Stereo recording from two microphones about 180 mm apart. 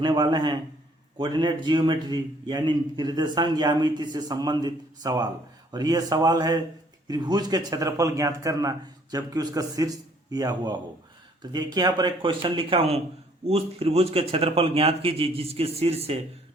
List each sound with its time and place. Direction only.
0.0 s a man's voice: 25° right (ahead or behind)